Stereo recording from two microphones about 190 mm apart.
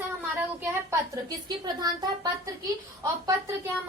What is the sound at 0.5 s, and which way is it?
A woman's voice, 15° right (ahead or behind).